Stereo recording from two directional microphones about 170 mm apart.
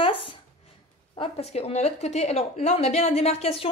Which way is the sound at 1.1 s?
35° left (ahead or behind).